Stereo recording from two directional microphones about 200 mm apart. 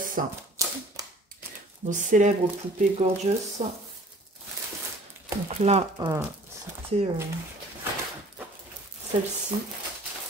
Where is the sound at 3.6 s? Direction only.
35° right (ahead or behind).